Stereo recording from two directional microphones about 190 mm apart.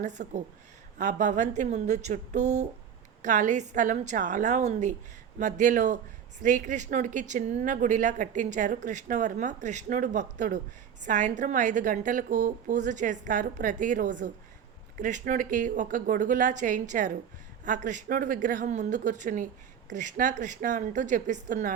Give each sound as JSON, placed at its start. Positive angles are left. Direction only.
{"t": 0.0, "sound": "a woman's voice", "side_deg": -40}